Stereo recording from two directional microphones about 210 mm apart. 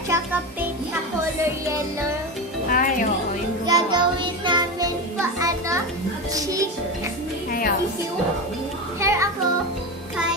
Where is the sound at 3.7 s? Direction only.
20° right (ahead or behind).